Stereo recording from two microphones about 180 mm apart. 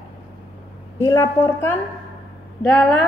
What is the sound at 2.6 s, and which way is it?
Speech, 5° left (ahead or behind).